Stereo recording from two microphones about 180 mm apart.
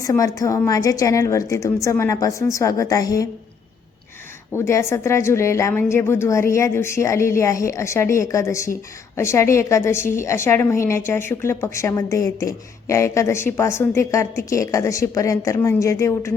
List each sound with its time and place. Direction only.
0.0 s a woman's voice: 20° left (ahead or behind)
4.5 s a woman's voice: 15° left (ahead or behind)